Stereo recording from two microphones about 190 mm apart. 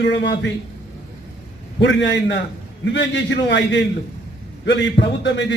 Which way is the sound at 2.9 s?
70° left (ahead or behind).